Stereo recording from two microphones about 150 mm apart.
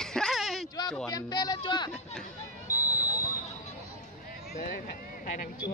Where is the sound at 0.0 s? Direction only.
5° left (ahead or behind).